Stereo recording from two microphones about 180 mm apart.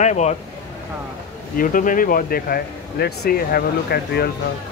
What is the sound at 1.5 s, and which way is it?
Speech, 50° left (ahead or behind).